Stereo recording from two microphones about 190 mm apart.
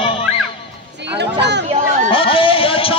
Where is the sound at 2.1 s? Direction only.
30° left (ahead or behind).